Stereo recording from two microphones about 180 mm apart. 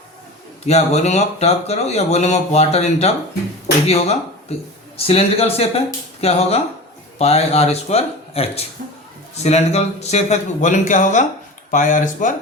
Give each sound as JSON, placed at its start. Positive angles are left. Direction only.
{"t": 0.6, "sound": "speech", "side_deg": 35}